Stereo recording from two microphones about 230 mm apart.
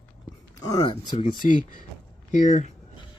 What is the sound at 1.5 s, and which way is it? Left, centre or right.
Speech, left.